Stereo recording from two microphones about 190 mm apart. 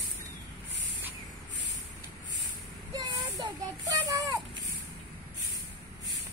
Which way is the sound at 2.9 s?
20° right (ahead or behind).